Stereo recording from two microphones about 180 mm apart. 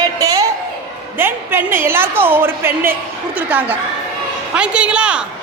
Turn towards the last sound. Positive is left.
turn(degrees=-5)  # may be behind; listen again after turning